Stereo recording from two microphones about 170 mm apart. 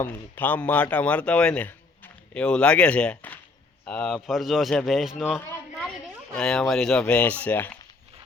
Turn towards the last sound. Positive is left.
turn(degrees=10)  # may be behind; listen again after turning